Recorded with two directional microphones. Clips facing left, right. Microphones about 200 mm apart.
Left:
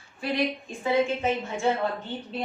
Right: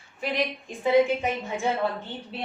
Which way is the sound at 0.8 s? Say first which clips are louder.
Right 4 dB; 15° right (ahead or behind).